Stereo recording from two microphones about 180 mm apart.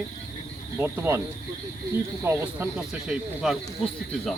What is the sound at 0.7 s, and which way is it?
Speech, 10° right (ahead or behind).